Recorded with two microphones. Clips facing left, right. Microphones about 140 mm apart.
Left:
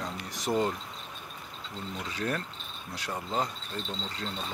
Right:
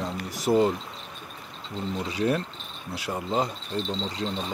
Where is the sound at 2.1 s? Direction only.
10° right (ahead or behind).